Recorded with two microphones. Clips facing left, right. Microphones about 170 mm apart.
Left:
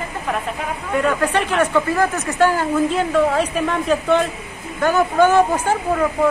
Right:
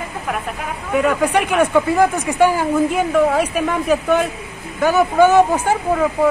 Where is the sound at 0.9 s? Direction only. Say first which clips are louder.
Right 3 dB; 5° right (ahead or behind).